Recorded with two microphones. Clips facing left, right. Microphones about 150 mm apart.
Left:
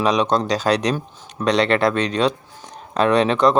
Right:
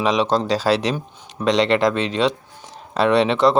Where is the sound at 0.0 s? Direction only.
30° right (ahead or behind).